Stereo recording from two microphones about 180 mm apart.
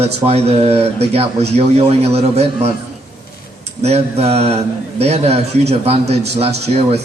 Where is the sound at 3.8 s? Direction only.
35° right (ahead or behind).